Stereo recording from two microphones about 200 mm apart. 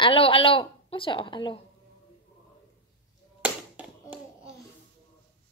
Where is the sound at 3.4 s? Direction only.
5° right (ahead or behind).